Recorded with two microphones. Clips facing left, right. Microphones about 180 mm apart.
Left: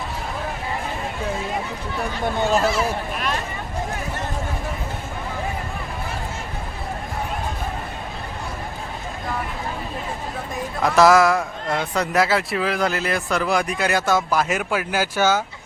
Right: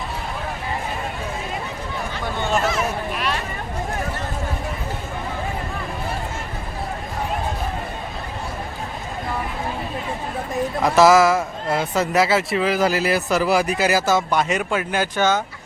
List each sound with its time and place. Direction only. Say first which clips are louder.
2.5 s speech: even; 35° left (ahead or behind)
10.8 s speech: right 1 dB; centre (ahead or behind)